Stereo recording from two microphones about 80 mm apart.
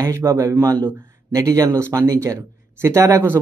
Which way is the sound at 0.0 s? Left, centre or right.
Right.